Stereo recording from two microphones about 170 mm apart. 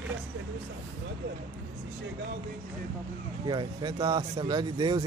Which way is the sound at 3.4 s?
25° right (ahead or behind).